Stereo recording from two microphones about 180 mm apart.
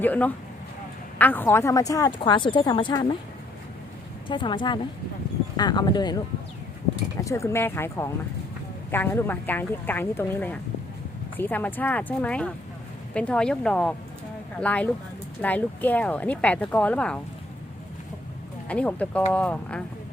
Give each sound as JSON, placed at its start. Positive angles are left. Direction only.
{"t": 0.0, "sound": "speech", "side_deg": 10}
{"t": 4.3, "sound": "speech", "side_deg": 25}
{"t": 18.7, "sound": "speech", "side_deg": 10}